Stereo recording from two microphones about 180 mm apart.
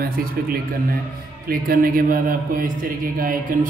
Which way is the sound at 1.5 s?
55° right (ahead or behind).